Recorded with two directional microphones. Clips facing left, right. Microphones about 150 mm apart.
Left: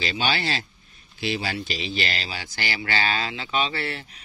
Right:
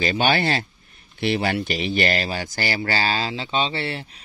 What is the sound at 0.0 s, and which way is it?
Speech, 55° right (ahead or behind).